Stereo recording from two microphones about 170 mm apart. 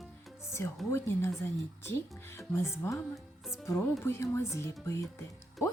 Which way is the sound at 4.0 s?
15° left (ahead or behind).